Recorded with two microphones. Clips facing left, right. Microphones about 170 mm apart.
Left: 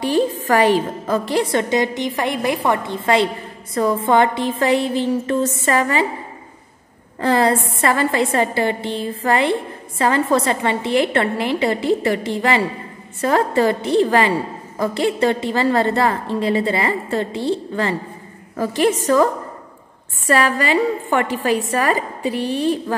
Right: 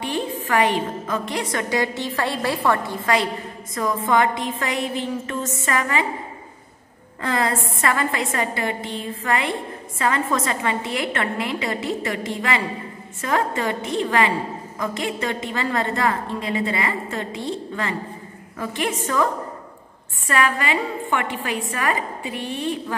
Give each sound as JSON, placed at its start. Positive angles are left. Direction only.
{"t": 0.0, "sound": "a woman's voice", "side_deg": 35}
{"t": 7.2, "sound": "a woman's voice", "side_deg": 30}
{"t": 20.2, "sound": "a woman's voice", "side_deg": 35}